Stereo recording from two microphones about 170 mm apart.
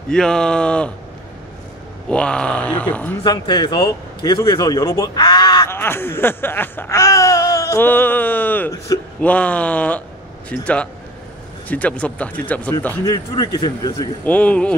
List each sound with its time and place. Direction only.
0.1 s speech: 5° left (ahead or behind)
2.0 s speech: 5° left (ahead or behind)
3.3 s speech: 25° left (ahead or behind); by 12.7 s 10° left (ahead or behind)
13.0 s speech: 25° left (ahead or behind)
14.2 s speech: 10° left (ahead or behind)